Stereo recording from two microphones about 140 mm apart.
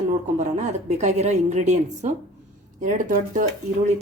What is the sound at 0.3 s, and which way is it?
A woman's voice, 55° right (ahead or behind).